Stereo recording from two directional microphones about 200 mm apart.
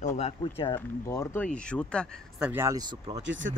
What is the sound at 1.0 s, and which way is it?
Speech, 15° left (ahead or behind).